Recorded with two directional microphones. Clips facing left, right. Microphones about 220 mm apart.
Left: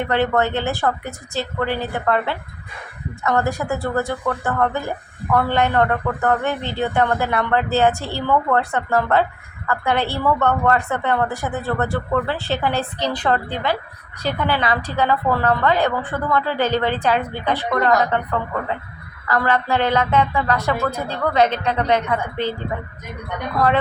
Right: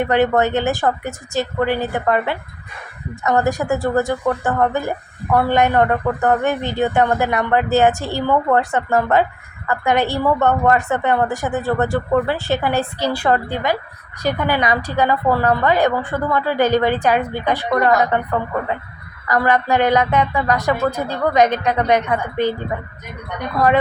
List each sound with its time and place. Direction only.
0.0 s speech: 15° right (ahead or behind)